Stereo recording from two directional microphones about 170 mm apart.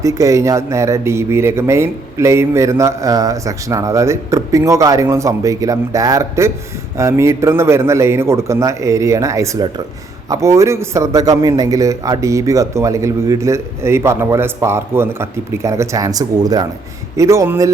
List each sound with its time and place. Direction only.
0.0 s speech: 20° right (ahead or behind)